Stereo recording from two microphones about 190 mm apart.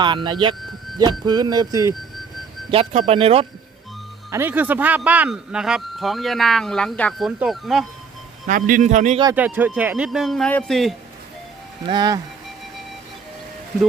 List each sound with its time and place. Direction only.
0.0 s speech: 25° right (ahead or behind)
0.6 s a sound: centre (ahead or behind)
1.2 s speech: 20° right (ahead or behind)
4.3 s speech: 10° right (ahead or behind)
8.4 s a man's voice: 45° right (ahead or behind)
9.3 s speech: 10° right (ahead or behind)
11.9 s speech: 20° right (ahead or behind)